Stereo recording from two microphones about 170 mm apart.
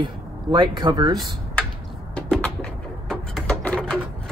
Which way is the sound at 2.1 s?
5° left (ahead or behind).